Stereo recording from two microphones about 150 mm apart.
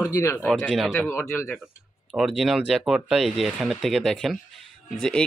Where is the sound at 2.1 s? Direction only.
Centre (ahead or behind).